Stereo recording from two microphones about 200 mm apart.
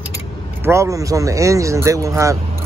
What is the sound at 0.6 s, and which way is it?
Speech, 15° right (ahead or behind).